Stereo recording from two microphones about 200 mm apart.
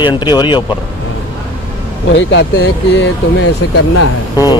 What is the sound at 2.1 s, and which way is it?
Speech, 65° left (ahead or behind).